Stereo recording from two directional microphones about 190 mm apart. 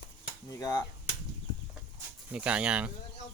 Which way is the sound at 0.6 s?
20° left (ahead or behind).